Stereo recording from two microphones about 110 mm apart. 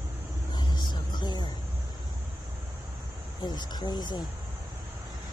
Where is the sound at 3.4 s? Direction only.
40° left (ahead or behind).